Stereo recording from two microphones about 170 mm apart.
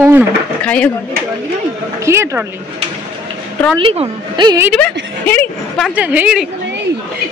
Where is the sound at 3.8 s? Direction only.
30° right (ahead or behind).